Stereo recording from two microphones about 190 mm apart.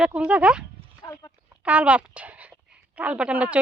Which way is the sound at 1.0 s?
20° left (ahead or behind).